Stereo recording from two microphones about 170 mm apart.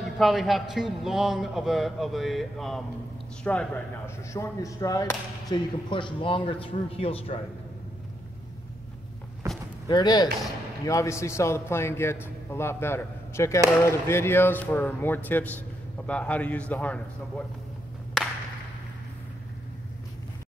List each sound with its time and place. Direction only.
0.2 s a man's voice: centre (ahead or behind)
4.3 s speech: 20° left (ahead or behind); by 7.3 s 35° left (ahead or behind)
9.8 s a man's voice: 25° left (ahead or behind); by 17.5 s 10° left (ahead or behind)
18.2 s a sound: centre (ahead or behind)